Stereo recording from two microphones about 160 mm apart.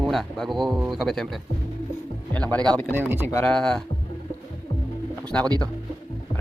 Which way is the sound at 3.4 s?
5° left (ahead or behind).